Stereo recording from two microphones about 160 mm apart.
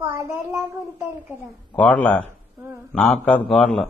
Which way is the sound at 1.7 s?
10° left (ahead or behind).